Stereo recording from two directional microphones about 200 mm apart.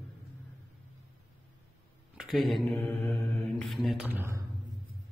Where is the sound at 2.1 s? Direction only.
Centre (ahead or behind).